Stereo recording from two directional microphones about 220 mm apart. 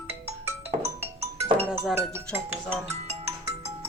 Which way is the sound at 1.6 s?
5° right (ahead or behind).